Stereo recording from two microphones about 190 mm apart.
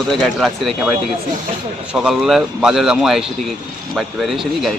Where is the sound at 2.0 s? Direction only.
5° right (ahead or behind).